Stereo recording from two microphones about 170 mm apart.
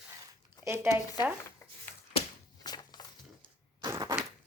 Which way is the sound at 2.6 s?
25° left (ahead or behind).